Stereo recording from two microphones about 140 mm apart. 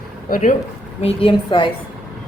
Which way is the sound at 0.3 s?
70° left (ahead or behind).